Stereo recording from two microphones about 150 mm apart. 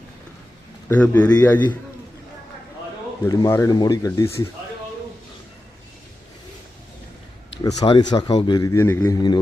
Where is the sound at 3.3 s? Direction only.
25° left (ahead or behind).